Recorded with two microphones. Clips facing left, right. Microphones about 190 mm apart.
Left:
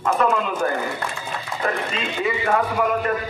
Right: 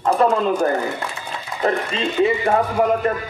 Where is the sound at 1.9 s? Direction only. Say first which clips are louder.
Right 6 dB; 30° right (ahead or behind).